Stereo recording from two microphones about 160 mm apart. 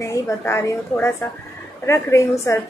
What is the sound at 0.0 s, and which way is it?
A woman's voice, 15° left (ahead or behind).